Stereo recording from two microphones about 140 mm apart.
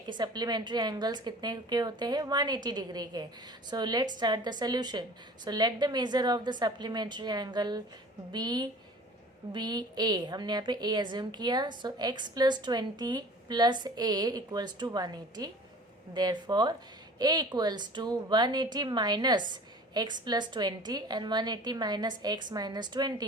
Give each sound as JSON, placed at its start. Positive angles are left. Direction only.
{"t": 0.1, "sound": "a woman's voice", "side_deg": -30}